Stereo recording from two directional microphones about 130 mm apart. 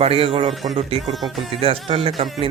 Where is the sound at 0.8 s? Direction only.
50° right (ahead or behind).